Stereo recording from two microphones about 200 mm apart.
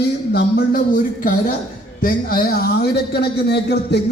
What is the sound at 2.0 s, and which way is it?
A man's voice, 45° left (ahead or behind).